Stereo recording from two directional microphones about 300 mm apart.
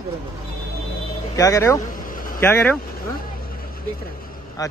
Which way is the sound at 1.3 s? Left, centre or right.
Centre.